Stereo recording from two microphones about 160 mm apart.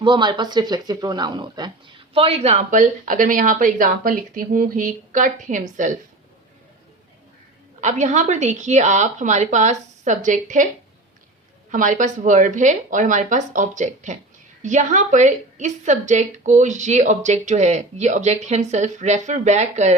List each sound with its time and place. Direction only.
0.0 s a woman's voice: 30° right (ahead or behind); by 5.9 s 55° right (ahead or behind)
7.8 s a woman's voice: 45° right (ahead or behind)
11.7 s a woman's voice: 55° right (ahead or behind)